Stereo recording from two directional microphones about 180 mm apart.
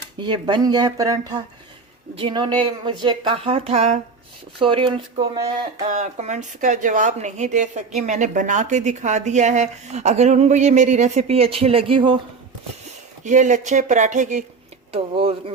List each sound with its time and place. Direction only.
0.2 s speech: 25° right (ahead or behind)
5.8 s speech: 40° right (ahead or behind)
13.2 s speech: 45° right (ahead or behind)